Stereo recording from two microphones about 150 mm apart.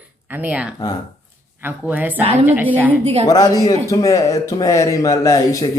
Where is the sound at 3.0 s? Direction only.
45° right (ahead or behind).